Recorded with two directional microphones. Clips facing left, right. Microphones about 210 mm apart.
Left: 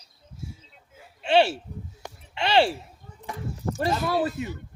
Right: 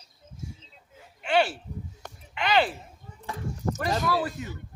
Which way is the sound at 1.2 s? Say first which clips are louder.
Left 4 dB; 25° left (ahead or behind).